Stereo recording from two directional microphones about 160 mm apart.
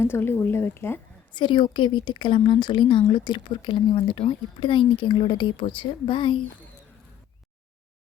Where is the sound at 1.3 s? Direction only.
30° left (ahead or behind).